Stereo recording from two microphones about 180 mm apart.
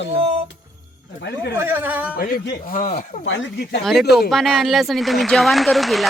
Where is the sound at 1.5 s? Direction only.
10° right (ahead or behind).